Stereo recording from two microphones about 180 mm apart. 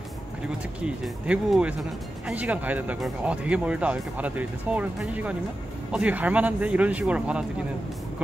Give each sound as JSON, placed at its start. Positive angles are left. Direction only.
{"t": 0.7, "sound": "speech", "side_deg": -5}